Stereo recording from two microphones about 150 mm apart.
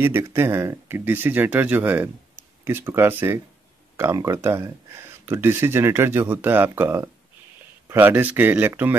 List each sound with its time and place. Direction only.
0.0 s speech: 15° right (ahead or behind)